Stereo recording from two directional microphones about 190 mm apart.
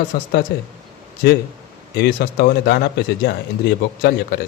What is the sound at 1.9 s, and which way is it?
A man's voice, 60° left (ahead or behind).